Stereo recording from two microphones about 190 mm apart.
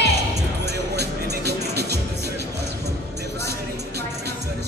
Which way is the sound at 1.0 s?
60° right (ahead or behind).